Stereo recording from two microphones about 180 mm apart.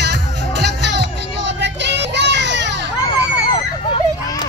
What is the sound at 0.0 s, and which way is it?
Music, 70° right (ahead or behind).